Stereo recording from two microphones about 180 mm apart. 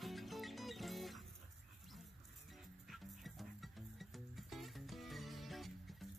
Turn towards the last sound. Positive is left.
turn(degrees=0)  # may be behind; listen again after turning